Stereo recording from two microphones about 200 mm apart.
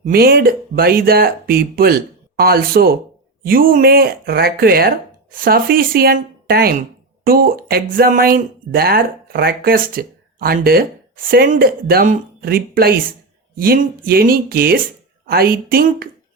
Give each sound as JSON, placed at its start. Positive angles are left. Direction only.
{"t": 0.0, "sound": "speech", "side_deg": -50}